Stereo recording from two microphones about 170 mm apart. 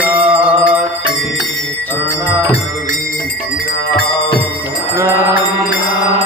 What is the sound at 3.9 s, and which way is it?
Music, 65° left (ahead or behind).